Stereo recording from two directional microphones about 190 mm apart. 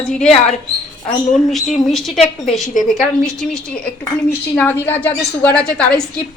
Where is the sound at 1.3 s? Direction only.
Centre (ahead or behind).